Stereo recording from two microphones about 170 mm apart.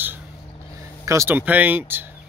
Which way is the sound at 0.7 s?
15° right (ahead or behind).